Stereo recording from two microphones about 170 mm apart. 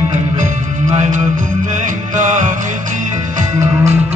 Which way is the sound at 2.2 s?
45° right (ahead or behind).